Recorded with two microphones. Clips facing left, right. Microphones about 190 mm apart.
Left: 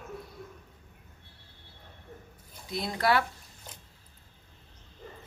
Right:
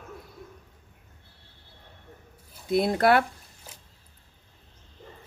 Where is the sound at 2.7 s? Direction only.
55° right (ahead or behind).